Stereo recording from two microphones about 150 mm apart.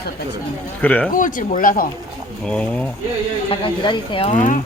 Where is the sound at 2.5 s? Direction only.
10° left (ahead or behind).